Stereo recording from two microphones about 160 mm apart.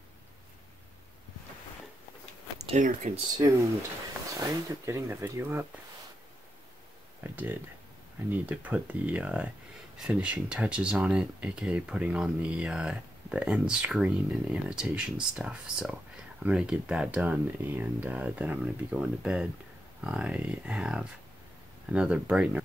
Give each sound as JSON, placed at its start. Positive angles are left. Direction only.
{"t": 2.7, "sound": "speech", "side_deg": -45}
{"t": 3.3, "sound": "speech", "side_deg": -20}
{"t": 7.2, "sound": "speech", "side_deg": -10}